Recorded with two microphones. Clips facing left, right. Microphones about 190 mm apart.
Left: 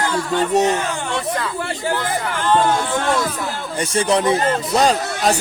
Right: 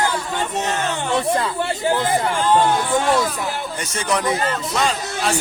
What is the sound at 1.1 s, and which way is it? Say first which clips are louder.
Speech: right 6 dB; 25° right (ahead or behind).